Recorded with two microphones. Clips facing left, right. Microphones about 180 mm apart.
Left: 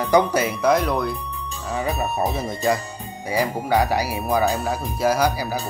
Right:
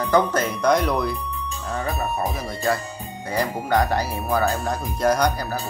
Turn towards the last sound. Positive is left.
turn(degrees=5)  # may be behind; listen again after turning